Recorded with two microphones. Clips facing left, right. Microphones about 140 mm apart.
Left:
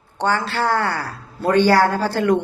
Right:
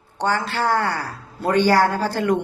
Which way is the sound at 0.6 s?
20° right (ahead or behind).